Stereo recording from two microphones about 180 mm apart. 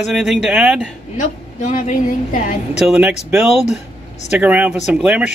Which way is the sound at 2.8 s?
5° right (ahead or behind).